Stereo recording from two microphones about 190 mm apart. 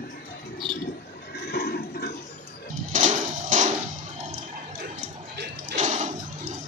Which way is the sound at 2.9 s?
40° right (ahead or behind).